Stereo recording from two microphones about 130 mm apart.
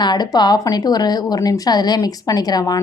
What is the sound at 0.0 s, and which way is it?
A woman's voice, 30° left (ahead or behind).